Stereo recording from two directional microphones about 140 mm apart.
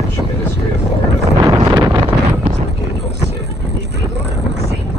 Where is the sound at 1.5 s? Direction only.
25° right (ahead or behind).